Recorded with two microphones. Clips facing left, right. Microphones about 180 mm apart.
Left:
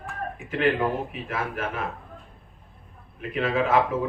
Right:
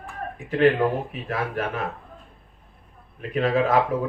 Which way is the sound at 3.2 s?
35° right (ahead or behind).